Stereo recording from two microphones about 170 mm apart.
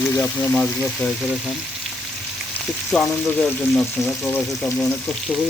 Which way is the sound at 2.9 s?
5° left (ahead or behind).